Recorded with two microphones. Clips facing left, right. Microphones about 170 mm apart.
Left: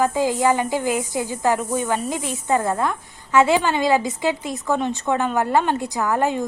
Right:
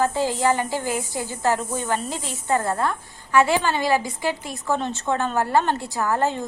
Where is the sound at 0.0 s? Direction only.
15° left (ahead or behind).